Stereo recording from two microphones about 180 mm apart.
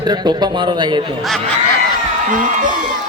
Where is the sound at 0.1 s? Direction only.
25° right (ahead or behind).